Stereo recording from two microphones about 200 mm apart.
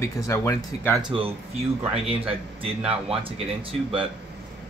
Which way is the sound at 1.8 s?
30° right (ahead or behind).